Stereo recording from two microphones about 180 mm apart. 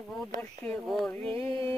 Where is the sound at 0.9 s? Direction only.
Centre (ahead or behind).